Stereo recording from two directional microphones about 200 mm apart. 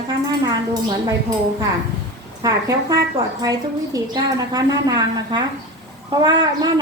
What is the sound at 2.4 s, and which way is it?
A woman's voice, 20° right (ahead or behind).